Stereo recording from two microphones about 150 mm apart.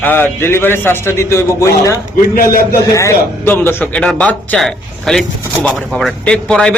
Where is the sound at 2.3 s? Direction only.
70° left (ahead or behind).